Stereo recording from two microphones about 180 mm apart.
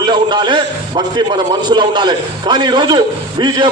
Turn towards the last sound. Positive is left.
turn(degrees=-25)  # may be behind; listen again after turning